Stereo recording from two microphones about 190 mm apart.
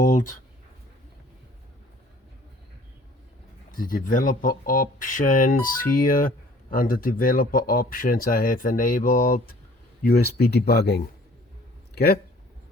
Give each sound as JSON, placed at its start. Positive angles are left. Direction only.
{"t": 0.0, "sound": "speech", "side_deg": 40}
{"t": 3.7, "sound": "speech", "side_deg": 45}